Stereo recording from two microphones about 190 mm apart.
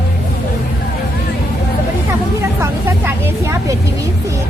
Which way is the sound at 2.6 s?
15° right (ahead or behind).